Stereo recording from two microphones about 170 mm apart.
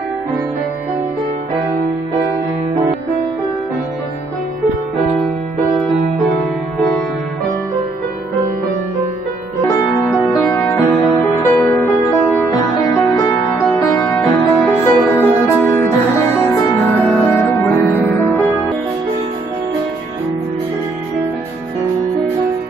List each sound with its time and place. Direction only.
9.7 s music: 20° left (ahead or behind)